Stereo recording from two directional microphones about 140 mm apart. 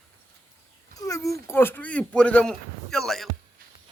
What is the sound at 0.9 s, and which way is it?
Speech, 25° left (ahead or behind).